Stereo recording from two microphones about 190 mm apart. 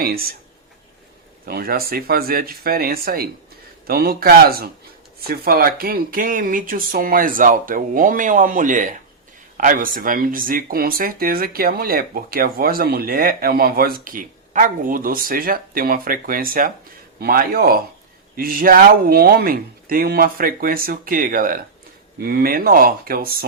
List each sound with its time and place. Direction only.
0.0 s speech: 50° right (ahead or behind)
1.5 s speech: 55° right (ahead or behind)